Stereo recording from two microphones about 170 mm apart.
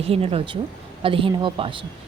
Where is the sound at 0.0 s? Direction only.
35° right (ahead or behind).